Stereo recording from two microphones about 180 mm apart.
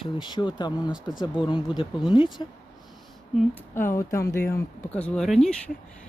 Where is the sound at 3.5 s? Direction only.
10° left (ahead or behind).